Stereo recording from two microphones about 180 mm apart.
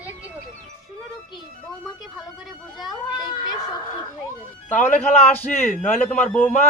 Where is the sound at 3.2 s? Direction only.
25° left (ahead or behind).